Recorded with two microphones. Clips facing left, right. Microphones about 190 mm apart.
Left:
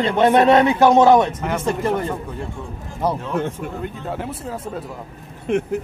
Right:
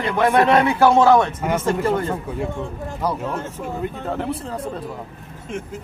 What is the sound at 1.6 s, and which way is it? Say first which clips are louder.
Speech: even; 15° left (ahead or behind).